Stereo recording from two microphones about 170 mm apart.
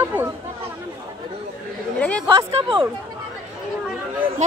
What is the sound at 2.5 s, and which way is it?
Speech, 35° right (ahead or behind).